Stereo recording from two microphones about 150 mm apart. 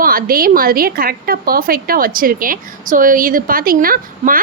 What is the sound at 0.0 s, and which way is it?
A woman's voice, 70° right (ahead or behind).